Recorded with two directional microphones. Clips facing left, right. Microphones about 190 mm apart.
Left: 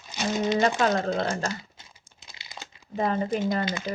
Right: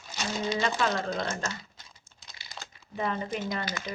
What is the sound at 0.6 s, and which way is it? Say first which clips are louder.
Speech: left 5 dB; 45° left (ahead or behind).